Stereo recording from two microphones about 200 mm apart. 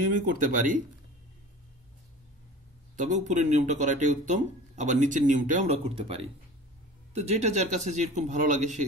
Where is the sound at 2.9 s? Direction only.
35° right (ahead or behind).